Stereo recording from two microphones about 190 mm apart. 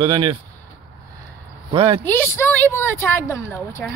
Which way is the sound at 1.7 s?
30° right (ahead or behind).